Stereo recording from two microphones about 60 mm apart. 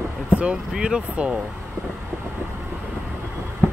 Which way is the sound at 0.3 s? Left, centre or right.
Centre.